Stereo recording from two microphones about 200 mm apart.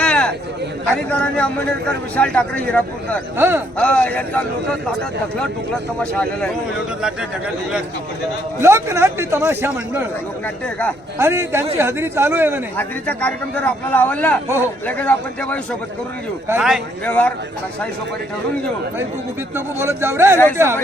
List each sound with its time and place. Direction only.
0.0 s a sound: 5° left (ahead or behind)
1.1 s a man's voice: 5° left (ahead or behind)
3.3 s a man's voice: 10° right (ahead or behind)
3.8 s a man's voice: 5° left (ahead or behind)
6.0 s a man's voice: 5° left (ahead or behind)
8.6 s a man's voice: 15° right (ahead or behind)
10.4 s a man's voice: 5° left (ahead or behind)
11.2 s a man's voice: 10° right (ahead or behind)
12.7 s a man's voice: 10° left (ahead or behind)
16.5 s a man's voice: 5° right (ahead or behind)
19.5 s a man's voice: 10° right (ahead or behind)